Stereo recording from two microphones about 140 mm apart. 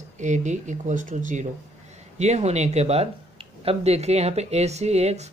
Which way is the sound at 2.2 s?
50° right (ahead or behind).